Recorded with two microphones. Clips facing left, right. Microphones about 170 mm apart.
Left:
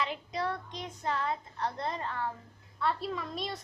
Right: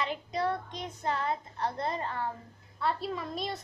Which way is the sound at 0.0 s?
Centre (ahead or behind).